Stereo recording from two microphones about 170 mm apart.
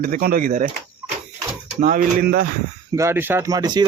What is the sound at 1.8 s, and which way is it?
Speech, 55° right (ahead or behind).